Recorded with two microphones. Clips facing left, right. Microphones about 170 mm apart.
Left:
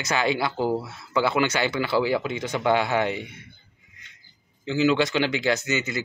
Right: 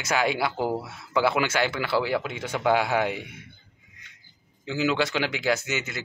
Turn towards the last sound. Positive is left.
turn(degrees=-5)  # may be behind; listen again after turning